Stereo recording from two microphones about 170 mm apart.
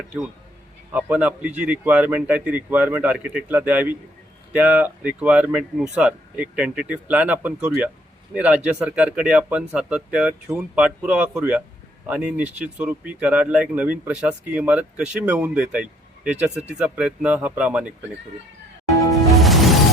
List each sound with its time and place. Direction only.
0.9 s a man's voice: 10° right (ahead or behind)
18.9 s music: 20° left (ahead or behind)
19.4 s music: centre (ahead or behind)